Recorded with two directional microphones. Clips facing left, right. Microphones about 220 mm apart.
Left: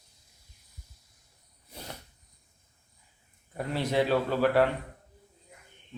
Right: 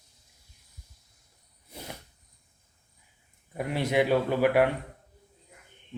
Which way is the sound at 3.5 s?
15° right (ahead or behind).